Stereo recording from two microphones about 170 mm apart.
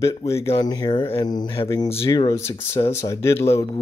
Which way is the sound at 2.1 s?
20° left (ahead or behind).